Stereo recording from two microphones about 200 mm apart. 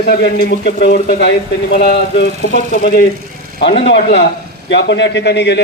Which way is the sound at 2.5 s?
40° left (ahead or behind).